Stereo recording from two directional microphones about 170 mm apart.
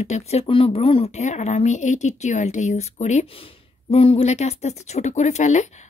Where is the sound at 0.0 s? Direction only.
40° left (ahead or behind).